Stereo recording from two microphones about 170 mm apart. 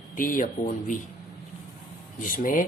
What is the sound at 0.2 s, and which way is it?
Speech, 50° left (ahead or behind).